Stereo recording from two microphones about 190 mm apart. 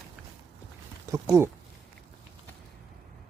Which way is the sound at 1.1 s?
15° right (ahead or behind).